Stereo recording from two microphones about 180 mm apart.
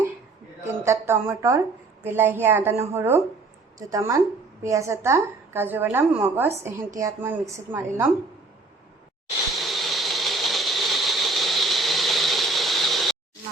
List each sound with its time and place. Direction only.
0.8 s a woman's voice: 15° right (ahead or behind)
9.6 s ratchet: centre (ahead or behind)